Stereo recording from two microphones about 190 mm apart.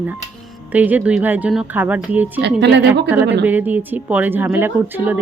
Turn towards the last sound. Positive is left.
turn(degrees=-10)  # may be behind; listen again after turning